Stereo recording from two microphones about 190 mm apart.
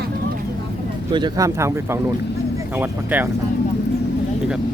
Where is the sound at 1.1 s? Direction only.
20° right (ahead or behind).